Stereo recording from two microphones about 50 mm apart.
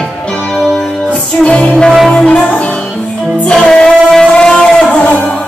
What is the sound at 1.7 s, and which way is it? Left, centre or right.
Music, centre.